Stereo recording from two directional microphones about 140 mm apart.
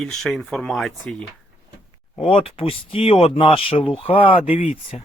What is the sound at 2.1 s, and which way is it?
Speech, 45° left (ahead or behind).